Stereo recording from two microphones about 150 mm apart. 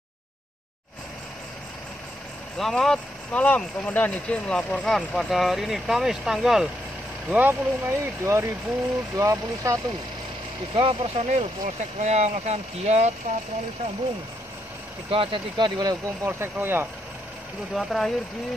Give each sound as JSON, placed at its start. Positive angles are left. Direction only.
{"t": 2.5, "sound": "speech", "side_deg": 5}
{"t": 10.7, "sound": "speech", "side_deg": -35}
{"t": 11.6, "sound": "speech", "side_deg": -50}
{"t": 15.0, "sound": "speech", "side_deg": -35}
{"t": 16.3, "sound": "speech", "side_deg": -15}
{"t": 17.7, "sound": "speech", "side_deg": 0}